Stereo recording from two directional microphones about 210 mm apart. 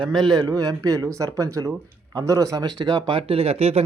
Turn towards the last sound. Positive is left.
turn(degrees=-30)  # may be behind; listen again after turning